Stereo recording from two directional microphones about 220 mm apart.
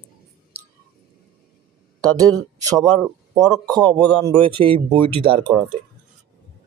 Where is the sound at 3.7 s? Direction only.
20° right (ahead or behind).